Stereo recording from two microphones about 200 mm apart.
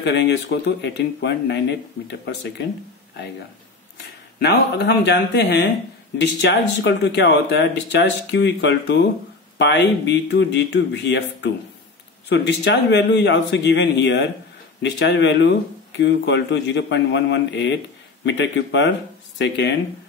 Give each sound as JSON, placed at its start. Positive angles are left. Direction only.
{"t": 0.0, "sound": "speech", "side_deg": 60}
{"t": 4.4, "sound": "speech", "side_deg": 55}